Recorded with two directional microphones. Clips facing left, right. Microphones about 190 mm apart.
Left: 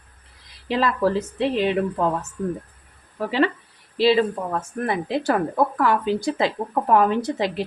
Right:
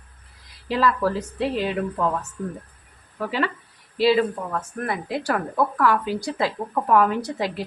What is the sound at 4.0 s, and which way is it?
Speech, 25° left (ahead or behind).